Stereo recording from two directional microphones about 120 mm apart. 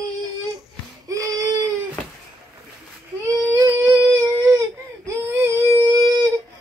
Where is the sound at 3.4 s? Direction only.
30° right (ahead or behind).